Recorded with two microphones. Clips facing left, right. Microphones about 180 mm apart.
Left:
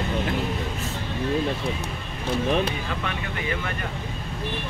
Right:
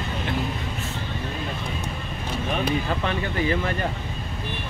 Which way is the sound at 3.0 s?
35° right (ahead or behind).